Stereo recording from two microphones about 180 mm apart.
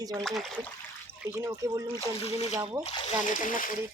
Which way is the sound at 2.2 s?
35° left (ahead or behind).